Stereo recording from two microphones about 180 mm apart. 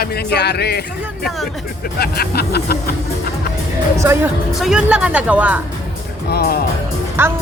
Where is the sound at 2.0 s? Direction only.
60° left (ahead or behind).